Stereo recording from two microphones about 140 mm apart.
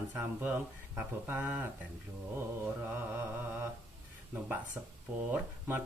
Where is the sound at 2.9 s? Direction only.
15° right (ahead or behind).